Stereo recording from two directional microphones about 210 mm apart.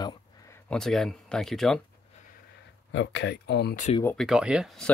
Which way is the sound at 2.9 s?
60° left (ahead or behind).